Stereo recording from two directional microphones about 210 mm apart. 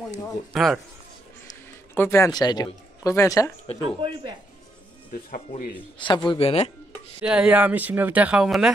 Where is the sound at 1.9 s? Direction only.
10° left (ahead or behind).